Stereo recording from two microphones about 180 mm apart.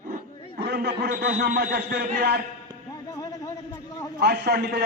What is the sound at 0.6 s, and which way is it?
A man's voice, 65° right (ahead or behind).